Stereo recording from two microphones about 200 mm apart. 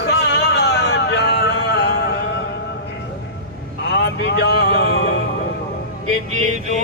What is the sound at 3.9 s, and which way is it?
Vehicle, 60° left (ahead or behind).